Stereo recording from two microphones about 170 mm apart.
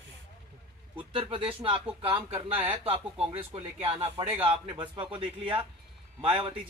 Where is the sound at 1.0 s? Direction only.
30° right (ahead or behind).